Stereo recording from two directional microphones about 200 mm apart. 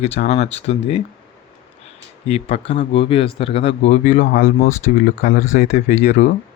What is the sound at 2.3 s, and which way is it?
Speech, 30° left (ahead or behind).